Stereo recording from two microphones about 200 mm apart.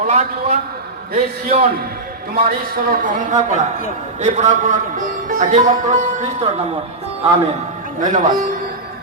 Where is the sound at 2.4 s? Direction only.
50° right (ahead or behind).